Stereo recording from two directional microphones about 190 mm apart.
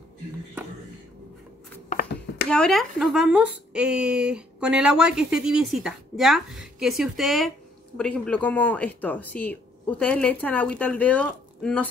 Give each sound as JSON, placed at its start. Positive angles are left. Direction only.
{"t": 1.9, "sound": "hands", "side_deg": 50}
{"t": 2.5, "sound": "speech", "side_deg": 0}